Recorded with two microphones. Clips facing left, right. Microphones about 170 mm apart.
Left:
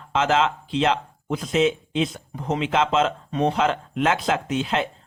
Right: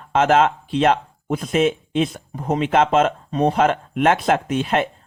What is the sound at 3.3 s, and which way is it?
Speech, 40° right (ahead or behind).